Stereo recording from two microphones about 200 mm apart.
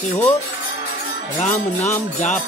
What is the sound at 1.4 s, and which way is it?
Music, 35° left (ahead or behind).